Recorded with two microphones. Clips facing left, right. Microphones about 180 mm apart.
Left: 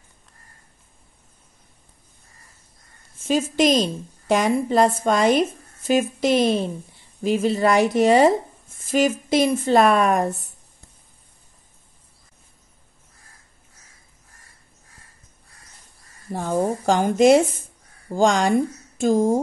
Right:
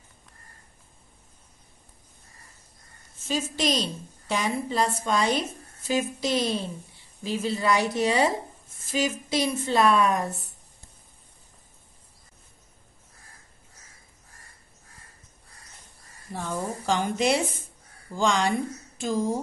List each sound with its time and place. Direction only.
3.3 s a woman's voice: 50° left (ahead or behind)
7.2 s a woman's voice: 50° left (ahead or behind)
16.3 s a woman's voice: 45° left (ahead or behind)